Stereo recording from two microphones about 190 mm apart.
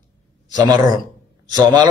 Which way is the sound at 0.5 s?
20° right (ahead or behind).